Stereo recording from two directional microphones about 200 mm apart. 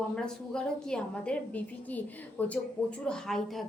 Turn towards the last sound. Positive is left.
turn(degrees=0)  # may be behind; listen again after turning